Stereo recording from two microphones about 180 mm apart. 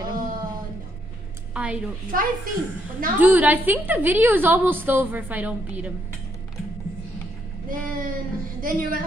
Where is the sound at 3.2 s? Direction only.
10° right (ahead or behind).